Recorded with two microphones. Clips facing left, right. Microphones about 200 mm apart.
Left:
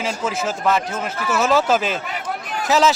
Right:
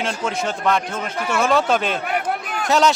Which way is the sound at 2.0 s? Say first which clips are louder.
Right 4 dB; 60° right (ahead or behind).